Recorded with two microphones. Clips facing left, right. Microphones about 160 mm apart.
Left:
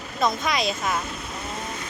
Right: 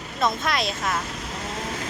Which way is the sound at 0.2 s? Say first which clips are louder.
Left 1 dB; centre (ahead or behind).